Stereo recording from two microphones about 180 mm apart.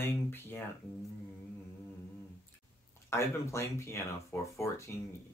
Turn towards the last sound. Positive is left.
turn(degrees=15)  # may be behind; listen again after turning